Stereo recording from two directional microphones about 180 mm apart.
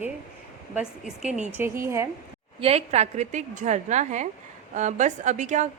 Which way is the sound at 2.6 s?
35° right (ahead or behind).